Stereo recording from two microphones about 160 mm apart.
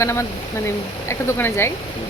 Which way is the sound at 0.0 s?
15° left (ahead or behind).